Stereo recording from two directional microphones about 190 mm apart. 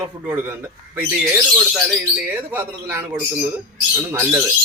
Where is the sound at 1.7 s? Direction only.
5° right (ahead or behind).